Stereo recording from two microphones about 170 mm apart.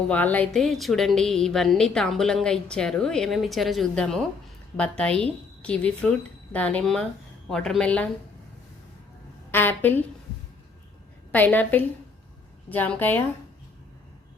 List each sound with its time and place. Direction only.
0.1 s a woman's voice: 10° left (ahead or behind)
9.5 s a woman's voice: 10° left (ahead or behind)
11.3 s a woman's voice: 10° left (ahead or behind)